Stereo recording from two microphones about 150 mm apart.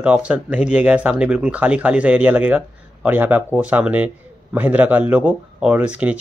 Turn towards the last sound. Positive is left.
turn(degrees=-10)  # may be behind; listen again after turning